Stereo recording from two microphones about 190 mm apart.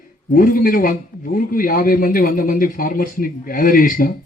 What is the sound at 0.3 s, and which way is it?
A man's voice, 45° left (ahead or behind).